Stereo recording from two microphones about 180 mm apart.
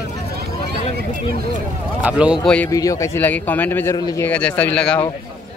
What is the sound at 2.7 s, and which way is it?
Speech, 20° left (ahead or behind).